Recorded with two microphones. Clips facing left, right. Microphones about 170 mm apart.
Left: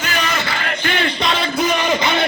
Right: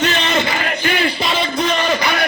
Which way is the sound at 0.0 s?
25° right (ahead or behind).